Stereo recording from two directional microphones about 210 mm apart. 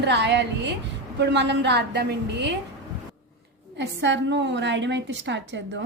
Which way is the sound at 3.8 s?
55° right (ahead or behind).